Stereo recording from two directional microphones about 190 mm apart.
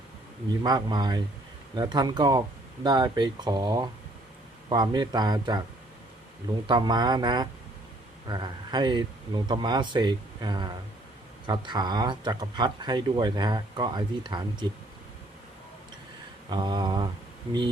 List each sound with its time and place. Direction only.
0.6 s speech: 20° right (ahead or behind)
6.7 s speech: 25° right (ahead or behind)
16.5 s speech: 25° right (ahead or behind)